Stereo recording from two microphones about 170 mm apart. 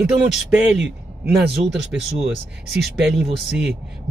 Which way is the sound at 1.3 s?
5° right (ahead or behind).